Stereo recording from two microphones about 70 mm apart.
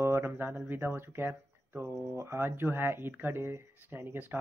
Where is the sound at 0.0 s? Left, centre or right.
Right.